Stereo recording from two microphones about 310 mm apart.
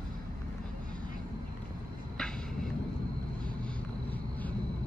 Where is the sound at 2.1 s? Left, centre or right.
Centre.